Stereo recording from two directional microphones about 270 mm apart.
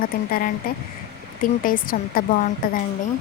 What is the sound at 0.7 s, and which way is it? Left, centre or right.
Speech, left.